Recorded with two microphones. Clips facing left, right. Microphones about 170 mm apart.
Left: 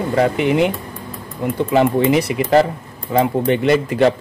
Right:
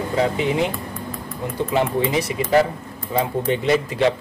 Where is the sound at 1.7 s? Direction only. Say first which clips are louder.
Left 6 dB; 70° left (ahead or behind).